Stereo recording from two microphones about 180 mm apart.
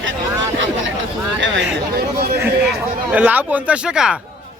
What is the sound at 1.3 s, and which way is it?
Speech, 90° right.